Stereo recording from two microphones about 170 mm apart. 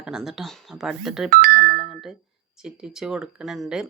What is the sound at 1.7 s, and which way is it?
Music, centre (ahead or behind).